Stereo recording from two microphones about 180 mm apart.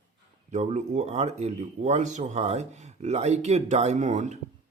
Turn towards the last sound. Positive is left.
turn(degrees=-40)  # may be behind; listen again after turning